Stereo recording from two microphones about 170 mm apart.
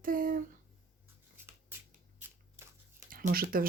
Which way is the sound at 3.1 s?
55° right (ahead or behind).